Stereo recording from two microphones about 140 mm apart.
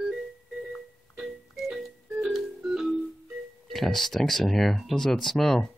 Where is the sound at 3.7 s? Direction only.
Centre (ahead or behind).